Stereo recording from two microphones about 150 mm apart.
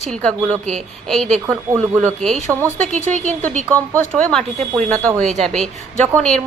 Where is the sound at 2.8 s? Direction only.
55° right (ahead or behind).